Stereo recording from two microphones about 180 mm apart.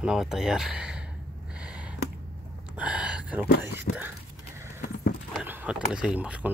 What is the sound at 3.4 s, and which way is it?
Speech, 65° left (ahead or behind).